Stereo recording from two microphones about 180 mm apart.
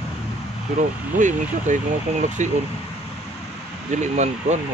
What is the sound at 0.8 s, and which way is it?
Speech, 45° right (ahead or behind).